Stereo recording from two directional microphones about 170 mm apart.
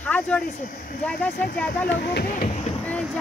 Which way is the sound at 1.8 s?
75° left (ahead or behind).